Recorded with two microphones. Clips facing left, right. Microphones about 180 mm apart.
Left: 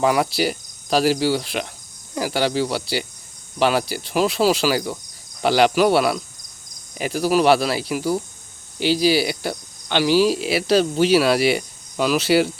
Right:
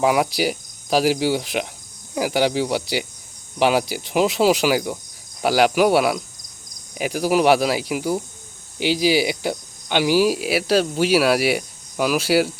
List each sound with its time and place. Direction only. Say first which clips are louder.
0.0 s cricket: even; 10° right (ahead or behind)